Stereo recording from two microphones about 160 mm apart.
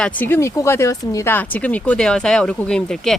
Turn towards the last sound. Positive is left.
turn(degrees=5)  # may be behind; listen again after turning